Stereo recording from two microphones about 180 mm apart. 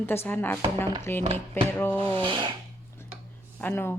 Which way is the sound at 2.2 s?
25° right (ahead or behind).